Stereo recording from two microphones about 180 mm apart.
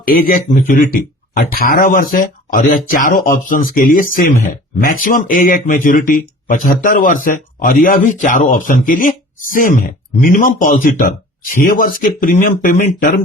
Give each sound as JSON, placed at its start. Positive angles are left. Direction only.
{"t": 0.0, "sound": "speech", "side_deg": 50}